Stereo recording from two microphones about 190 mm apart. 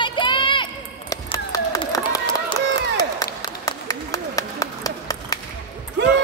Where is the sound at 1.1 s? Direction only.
20° left (ahead or behind).